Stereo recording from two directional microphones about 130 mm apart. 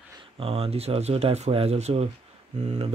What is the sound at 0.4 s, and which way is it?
Speech, 50° right (ahead or behind).